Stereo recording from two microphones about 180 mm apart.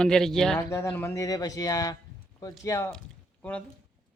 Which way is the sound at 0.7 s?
15° left (ahead or behind).